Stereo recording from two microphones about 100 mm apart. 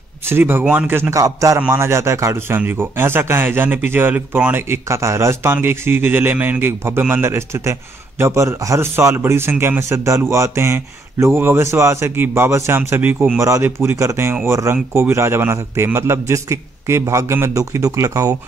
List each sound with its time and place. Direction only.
0.3 s a man's voice: 20° right (ahead or behind)
1.1 s a man's voice: 35° right (ahead or behind)